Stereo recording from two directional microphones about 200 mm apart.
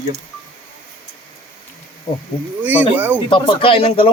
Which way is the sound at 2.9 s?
10° right (ahead or behind).